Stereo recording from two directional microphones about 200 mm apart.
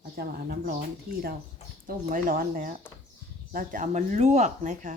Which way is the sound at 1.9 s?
40° right (ahead or behind).